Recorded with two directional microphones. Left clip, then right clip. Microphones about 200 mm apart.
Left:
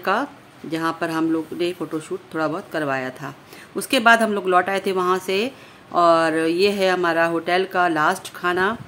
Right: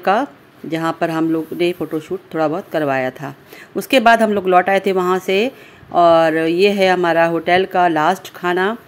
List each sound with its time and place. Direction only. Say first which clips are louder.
0.0 s speech: right 6 dB; 20° right (ahead or behind)